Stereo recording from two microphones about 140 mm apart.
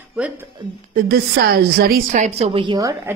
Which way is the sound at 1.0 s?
90° right.